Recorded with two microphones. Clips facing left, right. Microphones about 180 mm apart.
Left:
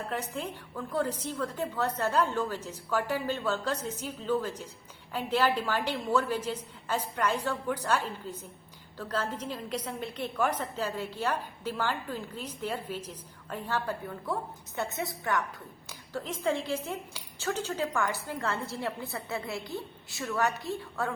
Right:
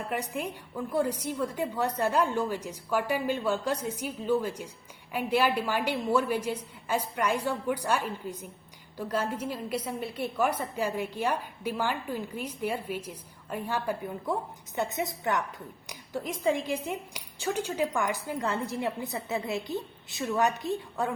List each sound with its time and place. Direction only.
0.1 s a woman's voice: 15° right (ahead or behind)